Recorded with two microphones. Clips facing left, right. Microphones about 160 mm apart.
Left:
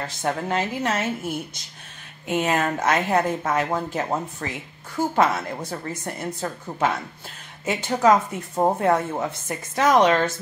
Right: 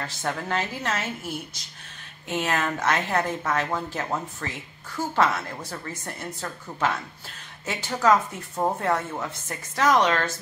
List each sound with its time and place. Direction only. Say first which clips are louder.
0.0 s a woman's voice: left 4 dB; 20° left (ahead or behind)
2.2 s a woman's voice: left 4 dB; 15° left (ahead or behind)